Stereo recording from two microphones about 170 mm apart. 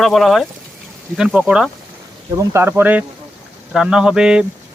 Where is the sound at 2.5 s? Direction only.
15° right (ahead or behind).